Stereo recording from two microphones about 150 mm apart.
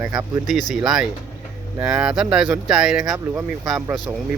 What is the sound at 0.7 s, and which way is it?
Speech, 5° right (ahead or behind).